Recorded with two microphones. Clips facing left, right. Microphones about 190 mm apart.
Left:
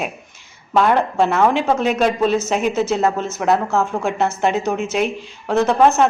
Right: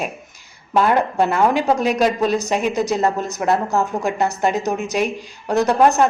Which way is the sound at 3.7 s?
15° right (ahead or behind).